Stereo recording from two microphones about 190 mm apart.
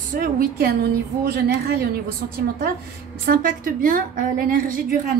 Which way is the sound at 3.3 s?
45° right (ahead or behind).